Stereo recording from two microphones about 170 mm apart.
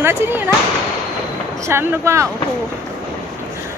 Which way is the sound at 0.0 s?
15° right (ahead or behind).